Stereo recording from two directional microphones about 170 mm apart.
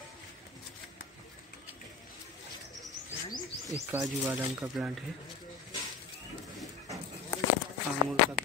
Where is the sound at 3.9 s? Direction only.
10° right (ahead or behind).